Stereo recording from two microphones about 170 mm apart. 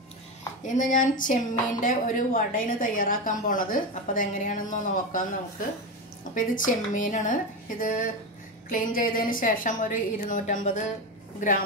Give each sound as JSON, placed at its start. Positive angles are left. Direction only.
{"t": 0.7, "sound": "speech", "side_deg": 50}
{"t": 6.3, "sound": "speech", "side_deg": 50}